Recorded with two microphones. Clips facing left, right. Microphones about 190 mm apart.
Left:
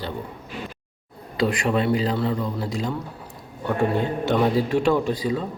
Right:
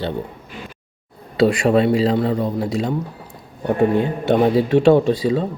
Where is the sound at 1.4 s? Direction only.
25° right (ahead or behind).